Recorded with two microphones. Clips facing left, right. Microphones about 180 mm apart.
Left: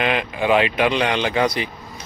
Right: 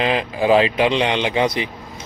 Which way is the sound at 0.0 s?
30° right (ahead or behind).